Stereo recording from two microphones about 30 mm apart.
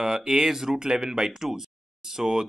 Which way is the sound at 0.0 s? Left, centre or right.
Centre.